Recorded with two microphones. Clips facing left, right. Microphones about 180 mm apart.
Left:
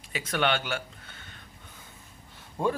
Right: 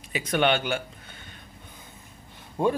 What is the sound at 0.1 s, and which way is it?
Speech, 15° right (ahead or behind).